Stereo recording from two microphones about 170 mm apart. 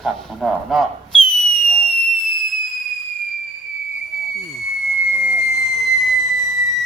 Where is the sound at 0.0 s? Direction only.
Centre (ahead or behind).